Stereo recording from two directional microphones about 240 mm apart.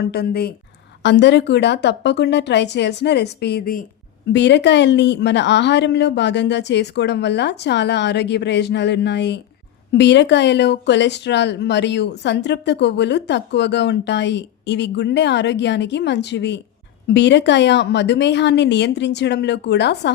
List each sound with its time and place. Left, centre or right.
0.0 s speech: left